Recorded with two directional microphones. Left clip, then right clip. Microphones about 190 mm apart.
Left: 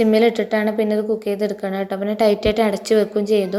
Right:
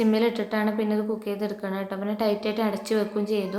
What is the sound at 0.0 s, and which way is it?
A woman's voice, 30° left (ahead or behind).